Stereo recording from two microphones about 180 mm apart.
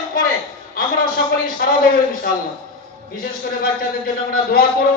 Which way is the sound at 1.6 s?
55° left (ahead or behind).